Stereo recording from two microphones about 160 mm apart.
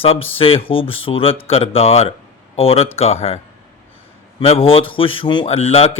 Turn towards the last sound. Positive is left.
turn(degrees=40)  # may be behind; listen again after turning